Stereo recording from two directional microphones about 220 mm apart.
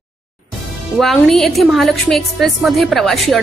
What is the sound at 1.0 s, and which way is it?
A woman's voice, centre (ahead or behind).